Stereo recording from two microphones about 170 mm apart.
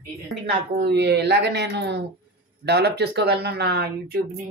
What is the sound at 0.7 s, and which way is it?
Speech, 80° right.